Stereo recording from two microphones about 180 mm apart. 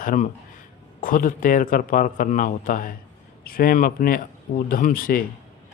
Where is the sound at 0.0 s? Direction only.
50° left (ahead or behind).